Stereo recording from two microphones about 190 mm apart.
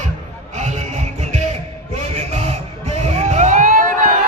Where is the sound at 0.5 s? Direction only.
35° right (ahead or behind).